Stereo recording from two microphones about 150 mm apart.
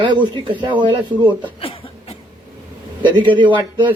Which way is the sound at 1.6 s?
40° left (ahead or behind).